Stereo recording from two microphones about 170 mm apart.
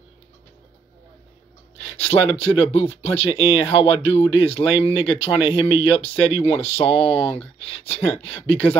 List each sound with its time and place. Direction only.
1.8 s speech: 40° left (ahead or behind)